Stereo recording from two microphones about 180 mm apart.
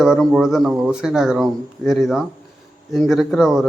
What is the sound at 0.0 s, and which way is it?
A man's voice, centre (ahead or behind).